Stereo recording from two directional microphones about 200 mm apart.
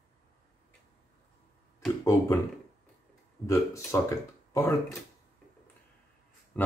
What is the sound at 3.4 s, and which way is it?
Speech, 15° left (ahead or behind).